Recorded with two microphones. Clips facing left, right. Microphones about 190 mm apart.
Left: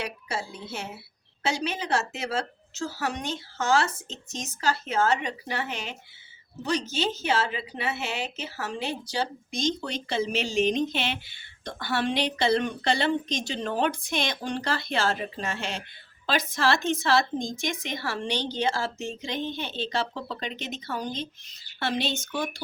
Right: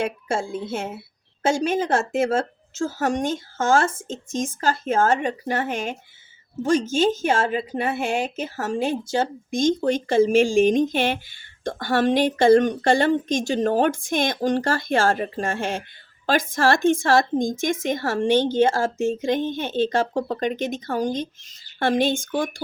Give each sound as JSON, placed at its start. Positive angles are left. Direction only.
{"t": 0.0, "sound": "speech", "side_deg": -50}